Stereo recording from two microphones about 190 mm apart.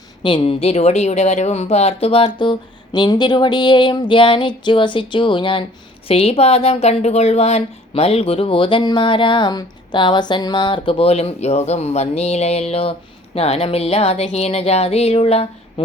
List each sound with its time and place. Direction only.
0.2 s a woman's voice: 25° left (ahead or behind)